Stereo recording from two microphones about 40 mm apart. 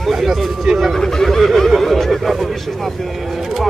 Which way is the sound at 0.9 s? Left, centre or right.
Centre.